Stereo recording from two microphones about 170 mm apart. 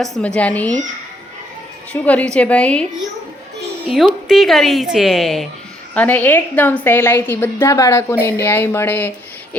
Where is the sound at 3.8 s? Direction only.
Centre (ahead or behind).